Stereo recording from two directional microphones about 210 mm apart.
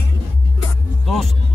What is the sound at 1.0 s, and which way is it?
Speech, centre (ahead or behind).